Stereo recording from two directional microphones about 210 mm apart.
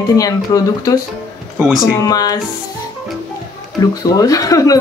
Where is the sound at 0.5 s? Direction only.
20° left (ahead or behind).